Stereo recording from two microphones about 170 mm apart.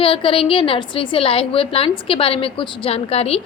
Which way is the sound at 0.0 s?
30° left (ahead or behind).